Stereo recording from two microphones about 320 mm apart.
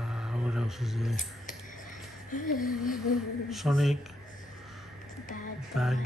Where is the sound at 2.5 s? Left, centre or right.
Left.